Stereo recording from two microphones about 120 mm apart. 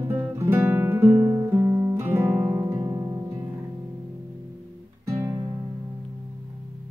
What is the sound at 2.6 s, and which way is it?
Music, 25° right (ahead or behind).